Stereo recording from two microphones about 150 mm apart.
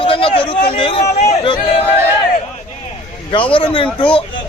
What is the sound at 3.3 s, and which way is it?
Speech, 35° left (ahead or behind).